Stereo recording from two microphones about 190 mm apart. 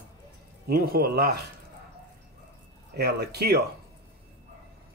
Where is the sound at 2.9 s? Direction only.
60° right (ahead or behind).